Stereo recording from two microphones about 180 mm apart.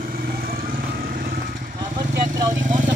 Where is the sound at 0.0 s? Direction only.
55° right (ahead or behind).